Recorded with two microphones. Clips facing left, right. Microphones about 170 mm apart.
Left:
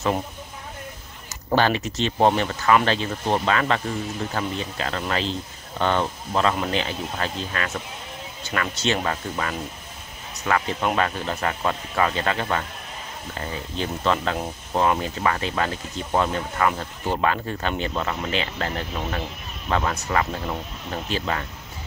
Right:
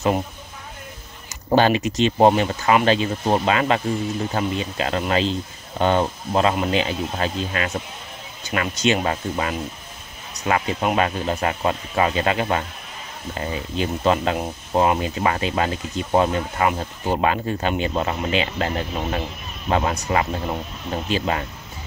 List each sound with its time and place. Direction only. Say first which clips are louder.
1.5 s speech: right 4 dB; 15° right (ahead or behind)